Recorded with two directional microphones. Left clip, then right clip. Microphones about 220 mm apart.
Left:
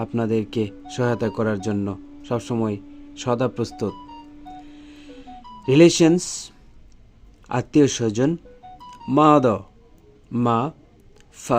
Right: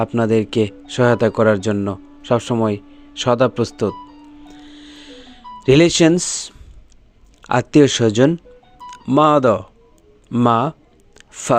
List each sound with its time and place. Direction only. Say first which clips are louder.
0.0 s speech: right 7 dB; 10° right (ahead or behind)
3.6 s speech: right 7 dB; centre (ahead or behind)
5.6 s speech: right 2 dB; 15° right (ahead or behind)
7.4 s speech: right 6 dB; 15° right (ahead or behind)